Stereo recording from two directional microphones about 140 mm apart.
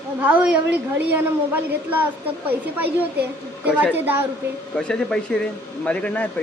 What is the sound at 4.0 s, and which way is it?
Speech, 15° right (ahead or behind).